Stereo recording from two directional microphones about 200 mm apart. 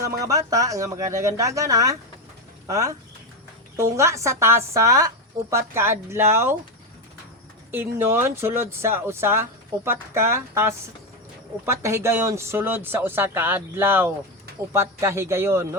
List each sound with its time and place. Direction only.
0.0 s speech: 15° right (ahead or behind)
7.7 s speech: 10° right (ahead or behind)